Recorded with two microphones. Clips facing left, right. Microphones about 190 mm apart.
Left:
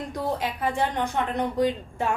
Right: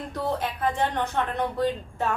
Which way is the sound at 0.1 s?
10° left (ahead or behind).